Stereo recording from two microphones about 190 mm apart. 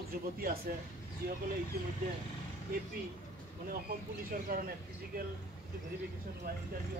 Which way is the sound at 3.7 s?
50° right (ahead or behind).